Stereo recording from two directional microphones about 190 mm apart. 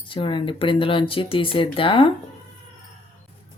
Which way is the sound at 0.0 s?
25° left (ahead or behind).